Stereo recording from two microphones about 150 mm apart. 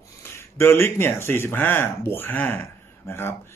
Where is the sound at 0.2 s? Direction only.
15° left (ahead or behind).